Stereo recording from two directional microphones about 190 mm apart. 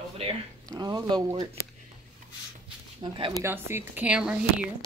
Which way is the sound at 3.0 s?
25° right (ahead or behind).